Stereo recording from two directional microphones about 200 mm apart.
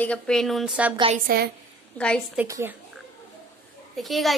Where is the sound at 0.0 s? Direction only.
5° left (ahead or behind).